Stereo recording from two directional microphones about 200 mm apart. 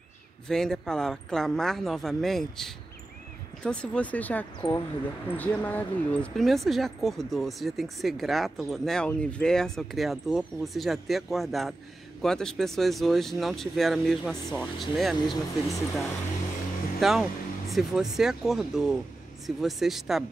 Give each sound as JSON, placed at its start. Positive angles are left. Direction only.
{"t": 0.5, "sound": "speech", "side_deg": 0}
{"t": 15.2, "sound": "speech", "side_deg": 20}
{"t": 17.0, "sound": "speech", "side_deg": 0}